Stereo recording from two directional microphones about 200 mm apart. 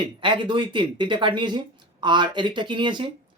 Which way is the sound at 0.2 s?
25° right (ahead or behind).